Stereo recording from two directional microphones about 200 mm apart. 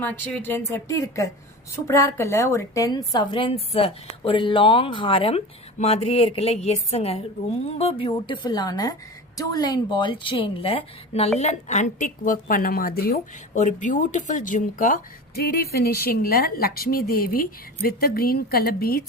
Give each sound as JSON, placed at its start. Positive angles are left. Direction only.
{"t": 0.0, "sound": "a woman's voice", "side_deg": 5}